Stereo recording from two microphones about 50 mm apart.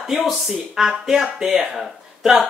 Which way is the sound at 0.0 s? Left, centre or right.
Centre.